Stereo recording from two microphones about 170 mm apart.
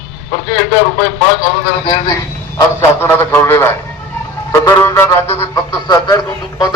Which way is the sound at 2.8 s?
15° left (ahead or behind).